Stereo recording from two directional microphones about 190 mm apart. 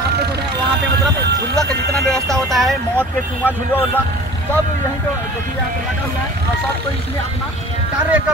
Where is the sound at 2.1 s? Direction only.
Centre (ahead or behind).